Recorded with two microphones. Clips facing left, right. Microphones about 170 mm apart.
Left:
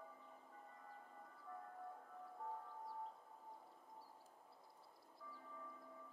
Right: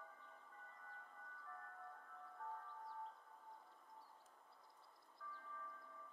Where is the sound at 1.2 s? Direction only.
15° left (ahead or behind).